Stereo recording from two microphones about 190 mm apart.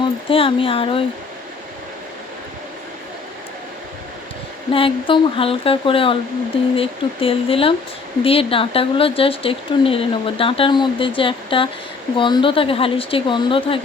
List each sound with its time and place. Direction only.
0.0 s speech: 30° left (ahead or behind)
4.7 s speech: 25° left (ahead or behind)